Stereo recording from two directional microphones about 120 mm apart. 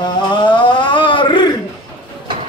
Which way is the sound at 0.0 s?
40° left (ahead or behind).